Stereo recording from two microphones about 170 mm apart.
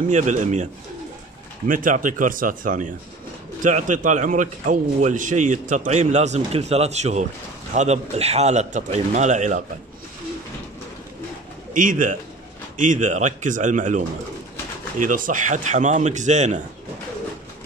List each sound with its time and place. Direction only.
0.1 s a man's voice: 45° right (ahead or behind)
1.7 s a man's voice: 55° right (ahead or behind)
11.7 s a man's voice: 50° right (ahead or behind)